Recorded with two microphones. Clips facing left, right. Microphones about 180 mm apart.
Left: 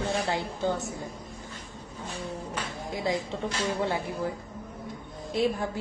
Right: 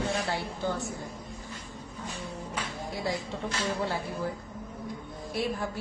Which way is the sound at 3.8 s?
20° left (ahead or behind).